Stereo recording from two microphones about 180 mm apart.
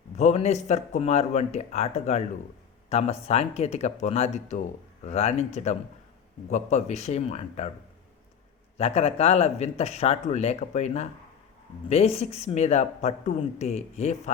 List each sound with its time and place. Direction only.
0.2 s speech: 40° left (ahead or behind)
8.8 s speech: 35° left (ahead or behind)